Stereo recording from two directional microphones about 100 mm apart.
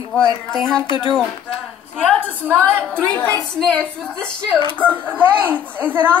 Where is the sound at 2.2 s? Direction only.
20° right (ahead or behind).